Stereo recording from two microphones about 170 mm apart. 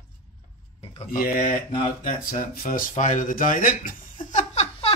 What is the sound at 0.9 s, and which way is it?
Speech, 55° left (ahead or behind).